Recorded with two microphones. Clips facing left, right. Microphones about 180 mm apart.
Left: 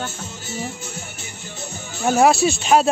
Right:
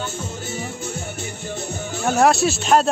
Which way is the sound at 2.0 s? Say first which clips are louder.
Left 1 dB; 5° left (ahead or behind).